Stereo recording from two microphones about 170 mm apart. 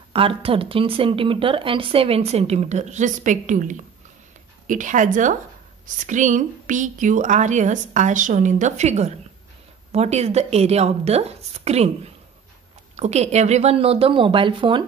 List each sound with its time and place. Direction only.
0.1 s a woman's voice: 30° right (ahead or behind)